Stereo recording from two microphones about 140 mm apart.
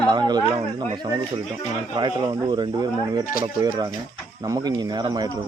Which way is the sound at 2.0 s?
30° right (ahead or behind).